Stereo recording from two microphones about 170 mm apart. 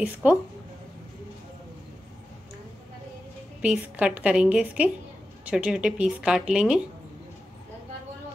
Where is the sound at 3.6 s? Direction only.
5° right (ahead or behind).